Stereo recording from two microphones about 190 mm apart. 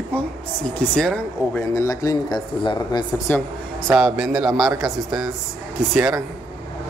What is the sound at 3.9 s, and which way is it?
A woman's voice, 5° right (ahead or behind).